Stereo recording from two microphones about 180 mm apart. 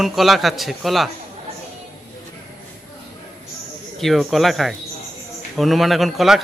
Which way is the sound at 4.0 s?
Centre (ahead or behind).